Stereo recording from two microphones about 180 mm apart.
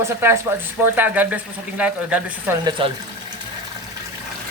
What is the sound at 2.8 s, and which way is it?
Speech, 30° right (ahead or behind).